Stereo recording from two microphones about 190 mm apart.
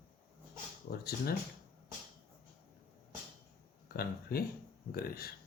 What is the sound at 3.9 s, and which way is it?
Speech, 55° left (ahead or behind).